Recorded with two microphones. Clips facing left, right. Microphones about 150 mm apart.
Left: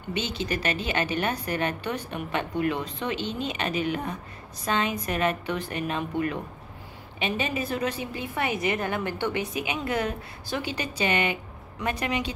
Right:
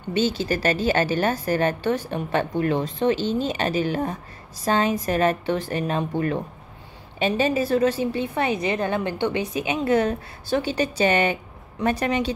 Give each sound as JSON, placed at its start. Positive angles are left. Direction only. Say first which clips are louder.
{"t": 0.1, "sound": "a woman's voice", "louder": "right 7 dB", "side_deg": -35}